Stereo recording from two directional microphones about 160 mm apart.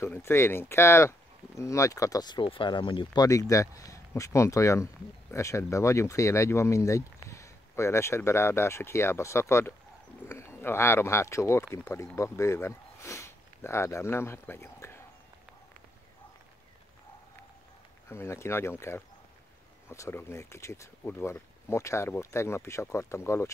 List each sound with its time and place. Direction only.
0.0 s speech: 15° left (ahead or behind)
18.0 s speech: 15° left (ahead or behind)